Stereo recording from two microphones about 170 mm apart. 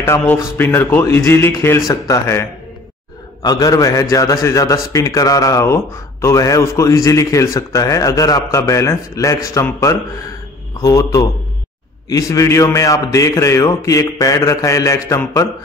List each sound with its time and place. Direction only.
0.0 s speech: 10° left (ahead or behind)
3.4 s a man's voice: 20° left (ahead or behind)